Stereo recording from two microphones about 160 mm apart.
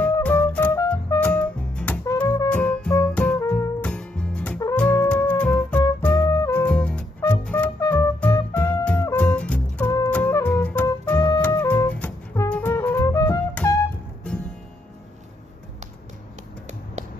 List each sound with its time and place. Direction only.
0.0 s music: 10° left (ahead or behind)
6.5 s music: 10° left (ahead or behind)